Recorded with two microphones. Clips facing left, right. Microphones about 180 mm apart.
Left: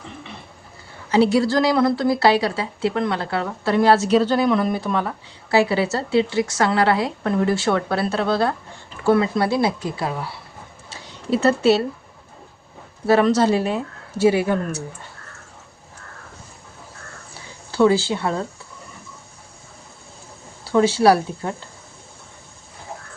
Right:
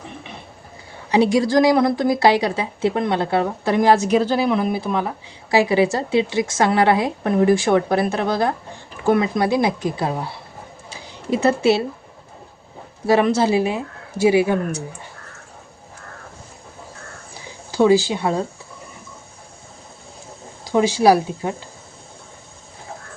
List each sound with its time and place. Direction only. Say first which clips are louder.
1.1 s a woman's voice: right 1 dB; 20° right (ahead or behind)
11.3 s a woman's voice: even; 10° right (ahead or behind)
13.1 s a woman's voice: even; 15° right (ahead or behind)
17.7 s a woman's voice: right 2 dB; 15° right (ahead or behind)
20.7 s a woman's voice: even; 15° right (ahead or behind)